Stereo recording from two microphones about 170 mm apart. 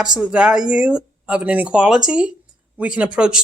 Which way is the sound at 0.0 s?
5° right (ahead or behind).